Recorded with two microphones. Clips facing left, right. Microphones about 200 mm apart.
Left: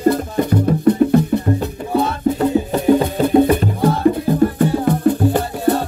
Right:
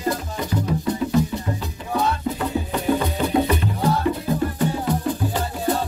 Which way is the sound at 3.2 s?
50° left (ahead or behind).